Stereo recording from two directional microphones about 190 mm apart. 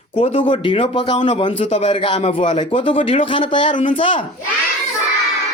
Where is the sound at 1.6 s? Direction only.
35° left (ahead or behind).